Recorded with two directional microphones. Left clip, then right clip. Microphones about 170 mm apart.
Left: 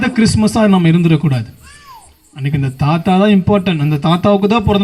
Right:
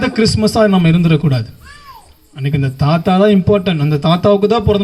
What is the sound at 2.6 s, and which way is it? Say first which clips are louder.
Speech: right 1 dB; 30° right (ahead or behind).